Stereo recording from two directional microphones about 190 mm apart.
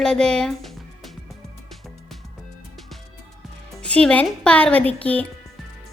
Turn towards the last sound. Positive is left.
turn(degrees=10)  # may be behind; listen again after turning